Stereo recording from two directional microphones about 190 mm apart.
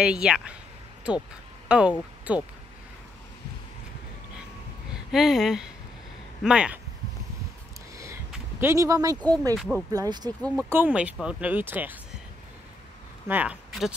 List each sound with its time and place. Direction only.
0.0 s speech: 5° right (ahead or behind)
1.7 s speech: 5° right (ahead or behind)
5.1 s speech: centre (ahead or behind)
8.3 s speech: 10° right (ahead or behind)
9.6 s speech: centre (ahead or behind)
9.9 s speech: 20° right (ahead or behind)
10.5 s speech: 10° right (ahead or behind)
13.3 s speech: 5° right (ahead or behind)